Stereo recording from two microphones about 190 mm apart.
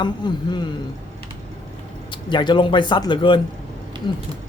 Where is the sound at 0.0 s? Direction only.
25° left (ahead or behind).